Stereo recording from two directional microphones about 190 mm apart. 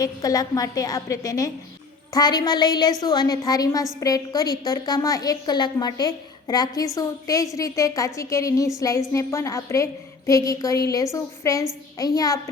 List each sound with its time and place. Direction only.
0.0 s a woman's voice: 20° left (ahead or behind)